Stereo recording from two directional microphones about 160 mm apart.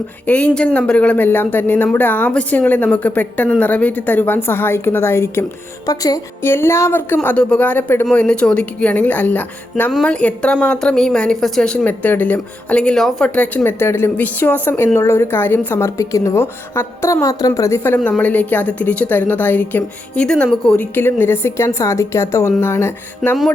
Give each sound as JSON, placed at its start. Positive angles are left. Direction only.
{"t": 0.3, "sound": "speech", "side_deg": 10}